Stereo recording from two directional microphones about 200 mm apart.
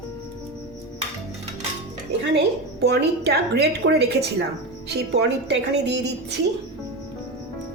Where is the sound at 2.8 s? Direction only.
55° right (ahead or behind).